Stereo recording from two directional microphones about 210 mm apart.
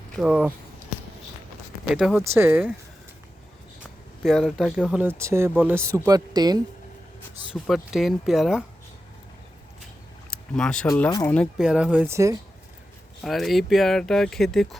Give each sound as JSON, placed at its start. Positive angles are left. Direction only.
{"t": 0.1, "sound": "speech", "side_deg": -5}
{"t": 1.9, "sound": "speech", "side_deg": -5}
{"t": 4.2, "sound": "speech", "side_deg": 0}
{"t": 7.5, "sound": "speech", "side_deg": 0}
{"t": 10.2, "sound": "a sound", "side_deg": 5}
{"t": 10.8, "sound": "speech", "side_deg": 5}
{"t": 11.3, "sound": "speech", "side_deg": -5}
{"t": 13.2, "sound": "speech", "side_deg": 0}